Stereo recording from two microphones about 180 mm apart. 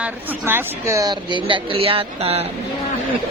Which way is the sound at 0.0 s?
10° right (ahead or behind).